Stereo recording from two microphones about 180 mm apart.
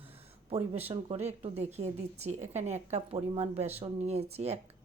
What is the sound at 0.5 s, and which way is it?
Speech, 35° right (ahead or behind).